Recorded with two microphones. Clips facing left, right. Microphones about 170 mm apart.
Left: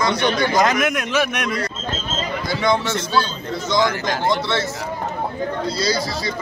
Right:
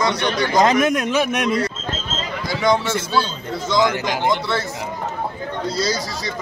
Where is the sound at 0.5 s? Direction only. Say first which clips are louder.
Right 2 dB; 30° right (ahead or behind).